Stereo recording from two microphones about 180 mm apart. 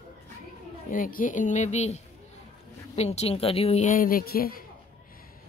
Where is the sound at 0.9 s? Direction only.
50° left (ahead or behind).